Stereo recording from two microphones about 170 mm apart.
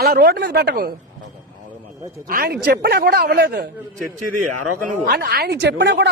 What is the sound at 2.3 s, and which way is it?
Speech, 65° right (ahead or behind).